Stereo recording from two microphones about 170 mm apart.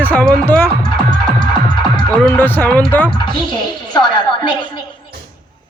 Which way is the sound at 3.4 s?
25° left (ahead or behind).